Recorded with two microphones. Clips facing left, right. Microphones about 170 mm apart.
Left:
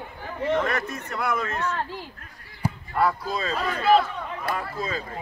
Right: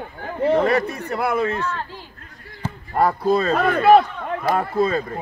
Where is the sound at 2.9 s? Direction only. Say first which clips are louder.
Right 7 dB; 50° right (ahead or behind).